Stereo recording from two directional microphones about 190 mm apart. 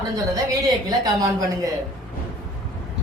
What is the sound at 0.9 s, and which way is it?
Speech, 20° right (ahead or behind).